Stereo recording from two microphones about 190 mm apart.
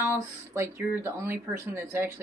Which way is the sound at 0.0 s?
15° right (ahead or behind).